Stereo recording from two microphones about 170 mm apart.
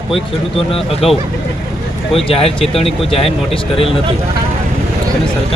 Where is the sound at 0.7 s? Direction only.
35° left (ahead or behind).